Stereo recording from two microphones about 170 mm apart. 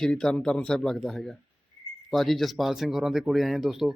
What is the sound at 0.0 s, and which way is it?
Speech, 5° left (ahead or behind).